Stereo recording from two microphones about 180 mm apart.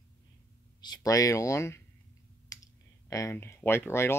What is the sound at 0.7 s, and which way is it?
Speech, 20° left (ahead or behind).